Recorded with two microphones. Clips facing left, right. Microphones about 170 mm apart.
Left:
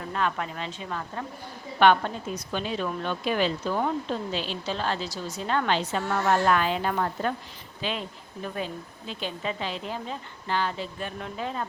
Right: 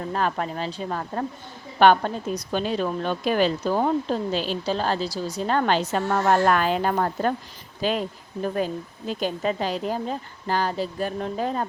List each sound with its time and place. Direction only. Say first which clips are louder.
0.1 s a woman's voice: right 2 dB; 40° right (ahead or behind)